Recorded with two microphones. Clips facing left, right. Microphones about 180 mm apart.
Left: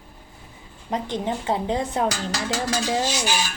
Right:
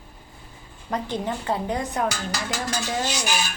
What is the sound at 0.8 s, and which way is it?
A woman's voice, 20° left (ahead or behind).